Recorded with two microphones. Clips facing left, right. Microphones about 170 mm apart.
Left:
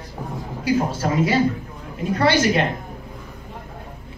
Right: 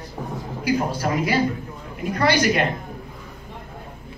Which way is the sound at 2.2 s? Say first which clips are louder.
Left 1 dB; 25° left (ahead or behind).